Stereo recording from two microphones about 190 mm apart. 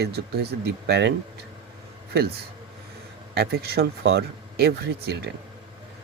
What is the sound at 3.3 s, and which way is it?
Speech, 55° right (ahead or behind).